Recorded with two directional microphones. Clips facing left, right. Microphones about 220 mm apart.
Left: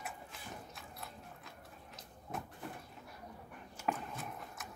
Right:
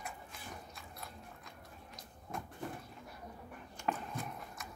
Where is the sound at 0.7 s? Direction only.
Centre (ahead or behind).